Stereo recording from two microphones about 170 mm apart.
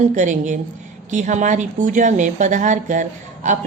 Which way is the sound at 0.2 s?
45° right (ahead or behind).